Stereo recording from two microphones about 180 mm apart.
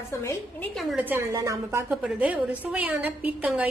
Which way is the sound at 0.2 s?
15° left (ahead or behind).